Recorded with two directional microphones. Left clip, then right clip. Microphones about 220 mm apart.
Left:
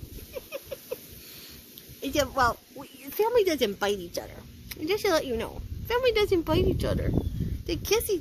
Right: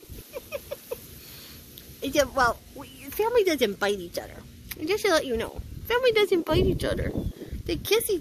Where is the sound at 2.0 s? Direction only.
15° right (ahead or behind).